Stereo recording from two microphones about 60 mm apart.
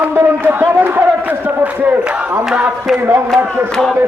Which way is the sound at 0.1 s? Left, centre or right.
Right.